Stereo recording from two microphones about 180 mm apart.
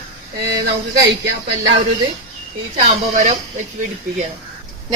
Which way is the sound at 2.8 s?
40° right (ahead or behind).